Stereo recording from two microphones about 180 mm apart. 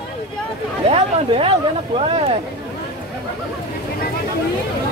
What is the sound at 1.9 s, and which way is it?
Speech, 30° right (ahead or behind).